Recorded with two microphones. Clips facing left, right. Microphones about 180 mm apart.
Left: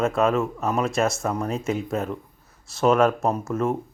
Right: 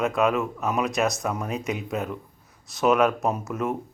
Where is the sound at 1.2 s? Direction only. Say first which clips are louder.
Left 3 dB; 5° right (ahead or behind).